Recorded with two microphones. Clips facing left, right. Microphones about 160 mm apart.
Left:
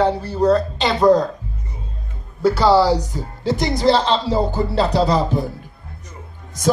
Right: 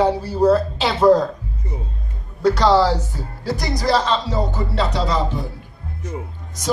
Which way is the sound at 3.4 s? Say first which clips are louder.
Left 5 dB; 25° left (ahead or behind).